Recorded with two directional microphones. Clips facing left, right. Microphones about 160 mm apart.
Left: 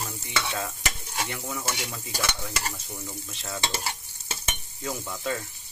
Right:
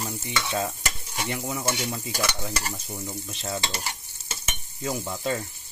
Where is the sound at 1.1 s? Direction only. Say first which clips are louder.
Right 4 dB; 20° right (ahead or behind).